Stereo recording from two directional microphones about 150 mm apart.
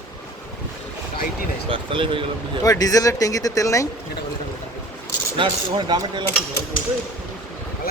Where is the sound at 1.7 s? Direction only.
35° right (ahead or behind).